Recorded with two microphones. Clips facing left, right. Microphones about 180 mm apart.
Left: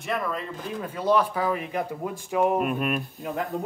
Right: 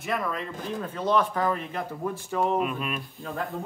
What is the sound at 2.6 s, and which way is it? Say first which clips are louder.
Speech: left 4 dB; 50° left (ahead or behind).